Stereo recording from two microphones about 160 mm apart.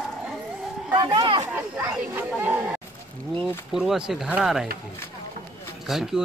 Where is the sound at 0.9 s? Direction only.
25° right (ahead or behind).